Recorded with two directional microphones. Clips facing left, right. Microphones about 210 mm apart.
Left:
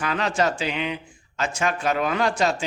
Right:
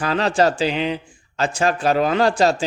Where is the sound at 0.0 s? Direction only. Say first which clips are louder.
Right 5 dB; 35° right (ahead or behind).